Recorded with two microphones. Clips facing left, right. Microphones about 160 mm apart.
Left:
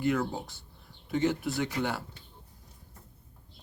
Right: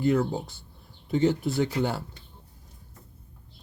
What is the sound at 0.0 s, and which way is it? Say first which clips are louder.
Speech: right 5 dB; 30° right (ahead or behind).